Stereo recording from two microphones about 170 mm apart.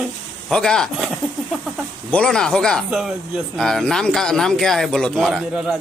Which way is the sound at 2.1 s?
5° left (ahead or behind).